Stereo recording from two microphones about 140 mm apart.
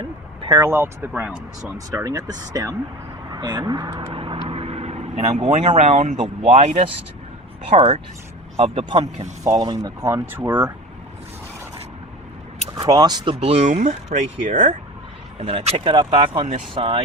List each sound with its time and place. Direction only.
0.0 s speech: 25° right (ahead or behind); by 1.7 s 10° right (ahead or behind)
1.9 s speech: 25° right (ahead or behind)
4.1 s vehicle: 40° right (ahead or behind); by 6.1 s 55° right (ahead or behind)
6.1 s speech: 50° right (ahead or behind)
9.6 s speech: 25° right (ahead or behind)
12.7 s speech: 30° right (ahead or behind)
13.3 s speech: 50° right (ahead or behind); by 14.7 s 65° right (ahead or behind)
15.4 s speech: 45° right (ahead or behind)